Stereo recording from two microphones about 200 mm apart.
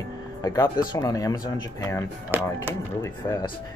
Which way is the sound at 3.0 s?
15° left (ahead or behind).